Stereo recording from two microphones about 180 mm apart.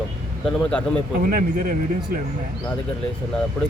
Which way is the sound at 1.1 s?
50° right (ahead or behind).